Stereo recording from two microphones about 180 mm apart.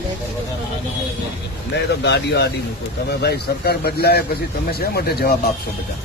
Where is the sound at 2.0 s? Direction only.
70° left (ahead or behind).